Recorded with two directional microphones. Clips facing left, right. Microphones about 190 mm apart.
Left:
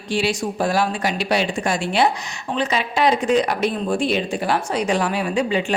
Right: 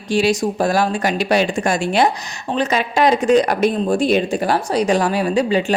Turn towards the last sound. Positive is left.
turn(degrees=-40)  # may be behind; listen again after turning